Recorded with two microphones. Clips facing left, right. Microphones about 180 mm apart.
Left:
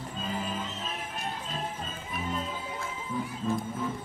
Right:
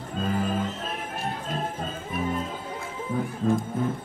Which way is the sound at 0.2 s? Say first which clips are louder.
Right 8 dB; 55° right (ahead or behind).